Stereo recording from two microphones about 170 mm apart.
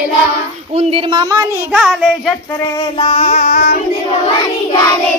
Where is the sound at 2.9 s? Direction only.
30° left (ahead or behind); by 3.8 s 50° left (ahead or behind).